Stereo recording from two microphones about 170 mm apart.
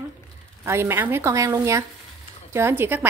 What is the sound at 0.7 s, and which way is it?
A woman's voice, 15° right (ahead or behind).